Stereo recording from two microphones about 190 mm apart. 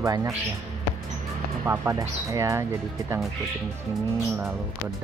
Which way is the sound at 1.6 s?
15° right (ahead or behind).